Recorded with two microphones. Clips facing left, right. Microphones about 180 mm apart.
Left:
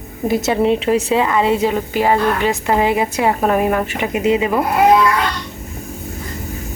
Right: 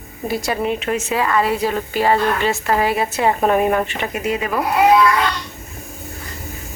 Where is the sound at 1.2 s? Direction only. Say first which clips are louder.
Left 3 dB; 20° left (ahead or behind); by 3.9 s centre (ahead or behind).